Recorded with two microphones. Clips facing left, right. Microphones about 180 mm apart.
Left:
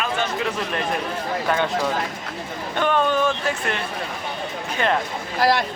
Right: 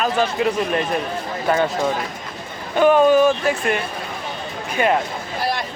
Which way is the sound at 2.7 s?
10° right (ahead or behind).